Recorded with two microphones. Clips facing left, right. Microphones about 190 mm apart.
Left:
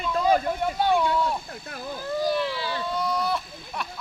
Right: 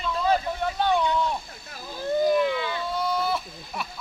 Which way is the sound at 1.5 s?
55° left (ahead or behind).